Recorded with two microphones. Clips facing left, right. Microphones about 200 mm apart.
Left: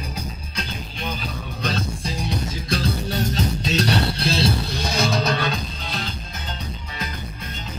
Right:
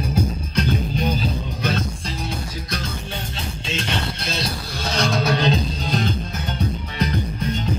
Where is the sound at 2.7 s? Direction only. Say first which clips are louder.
Left 7 dB; 35° left (ahead or behind).